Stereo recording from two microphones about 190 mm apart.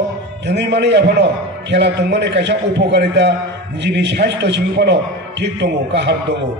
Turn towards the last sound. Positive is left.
turn(degrees=-65)  # may be behind; listen again after turning